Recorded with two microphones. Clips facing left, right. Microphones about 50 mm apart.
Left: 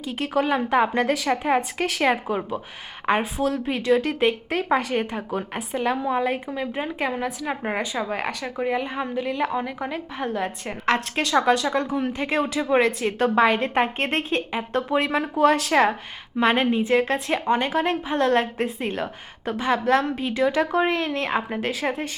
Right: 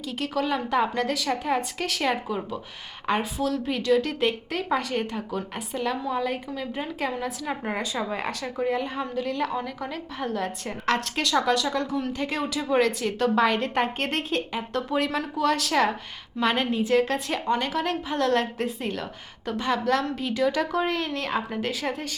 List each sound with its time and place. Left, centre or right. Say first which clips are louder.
0.1 s a woman's voice: left 4 dB; left
19.5 s a woman's voice: left 3 dB; centre
19.8 s a woman's voice: left 4 dB; left